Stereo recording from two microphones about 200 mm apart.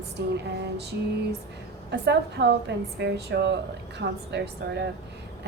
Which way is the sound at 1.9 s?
60° right (ahead or behind).